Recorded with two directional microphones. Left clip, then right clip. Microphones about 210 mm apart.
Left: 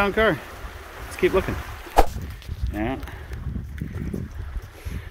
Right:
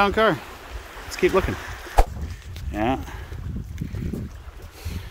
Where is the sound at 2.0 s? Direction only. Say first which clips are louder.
Left 4 dB; centre (ahead or behind).